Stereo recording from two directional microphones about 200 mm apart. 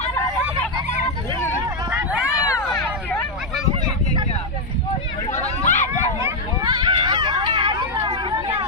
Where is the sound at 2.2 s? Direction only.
15° left (ahead or behind).